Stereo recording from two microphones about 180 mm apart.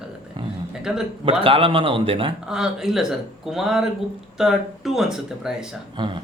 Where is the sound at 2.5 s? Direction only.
5° right (ahead or behind).